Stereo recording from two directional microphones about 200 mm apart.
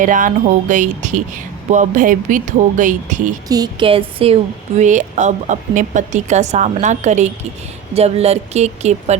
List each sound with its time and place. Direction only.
0.0 s speech: 40° right (ahead or behind)
3.5 s speech: 20° right (ahead or behind)